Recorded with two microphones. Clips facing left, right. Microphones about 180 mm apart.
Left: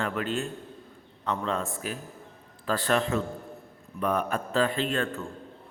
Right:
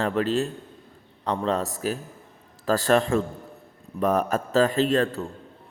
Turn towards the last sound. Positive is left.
turn(degrees=-35)  # may be behind; listen again after turning